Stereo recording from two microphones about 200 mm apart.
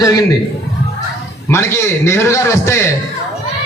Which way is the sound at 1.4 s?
15° left (ahead or behind).